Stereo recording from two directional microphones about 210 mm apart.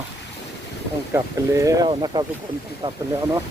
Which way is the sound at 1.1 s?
15° right (ahead or behind).